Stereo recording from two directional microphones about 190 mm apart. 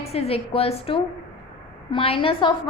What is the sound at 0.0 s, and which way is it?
A woman's voice, 30° left (ahead or behind).